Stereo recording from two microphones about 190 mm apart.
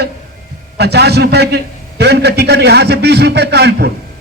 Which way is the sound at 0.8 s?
60° right (ahead or behind).